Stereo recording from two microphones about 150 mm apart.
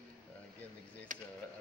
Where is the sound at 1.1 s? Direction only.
60° right (ahead or behind).